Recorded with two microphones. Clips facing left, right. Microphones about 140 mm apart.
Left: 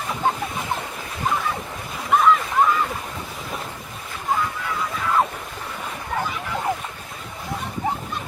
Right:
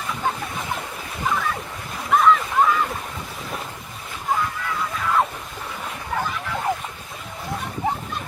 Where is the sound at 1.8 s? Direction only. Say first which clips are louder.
Even; 5° left (ahead or behind).